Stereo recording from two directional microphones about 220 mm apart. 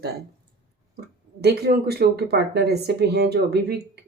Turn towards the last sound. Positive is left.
turn(degrees=-50)  # may be behind; listen again after turning